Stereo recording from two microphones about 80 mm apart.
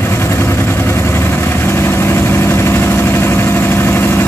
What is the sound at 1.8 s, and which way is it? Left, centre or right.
Vehicle, left.